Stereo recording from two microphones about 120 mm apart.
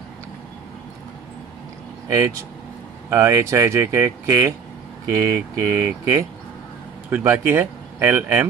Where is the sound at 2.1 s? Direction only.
25° right (ahead or behind).